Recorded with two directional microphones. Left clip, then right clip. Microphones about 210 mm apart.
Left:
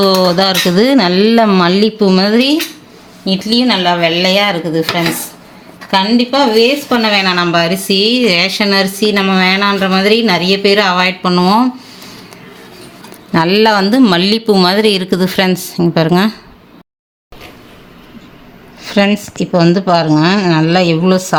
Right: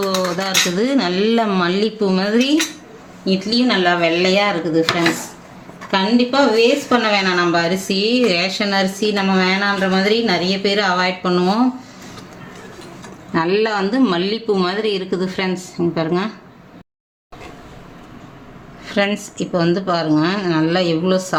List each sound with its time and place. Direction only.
0.0 s speech: 50° left (ahead or behind); by 4.9 s 35° left (ahead or behind)
5.9 s speech: 40° left (ahead or behind)
13.3 s speech: 45° left (ahead or behind)
18.9 s speech: 35° left (ahead or behind)